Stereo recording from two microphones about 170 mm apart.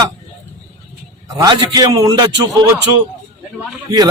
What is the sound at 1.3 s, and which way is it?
Speech, 25° right (ahead or behind).